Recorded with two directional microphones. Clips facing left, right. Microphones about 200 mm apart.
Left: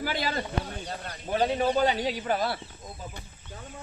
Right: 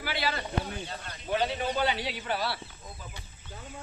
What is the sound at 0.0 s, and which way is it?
Speech, 45° left (ahead or behind).